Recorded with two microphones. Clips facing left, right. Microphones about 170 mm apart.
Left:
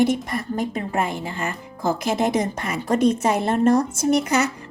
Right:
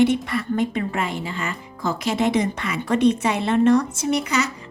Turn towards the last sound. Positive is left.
turn(degrees=55)  # may be behind; listen again after turning